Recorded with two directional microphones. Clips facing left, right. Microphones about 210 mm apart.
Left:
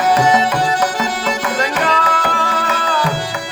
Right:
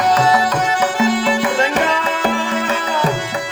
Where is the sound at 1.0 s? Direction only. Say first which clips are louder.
Right 4 dB; 40° left (ahead or behind).